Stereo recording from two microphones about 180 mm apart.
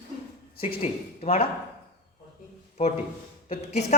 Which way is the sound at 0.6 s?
35° left (ahead or behind).